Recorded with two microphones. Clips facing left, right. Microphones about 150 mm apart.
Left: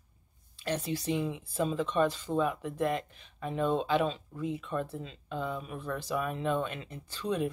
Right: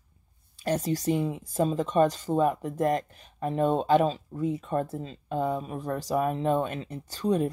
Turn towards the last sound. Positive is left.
turn(degrees=-40)  # may be behind; listen again after turning